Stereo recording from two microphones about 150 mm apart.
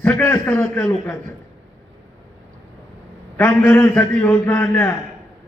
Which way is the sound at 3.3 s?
15° left (ahead or behind).